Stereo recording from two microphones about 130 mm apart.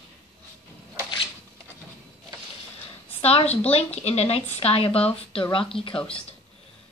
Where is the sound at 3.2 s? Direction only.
50° left (ahead or behind).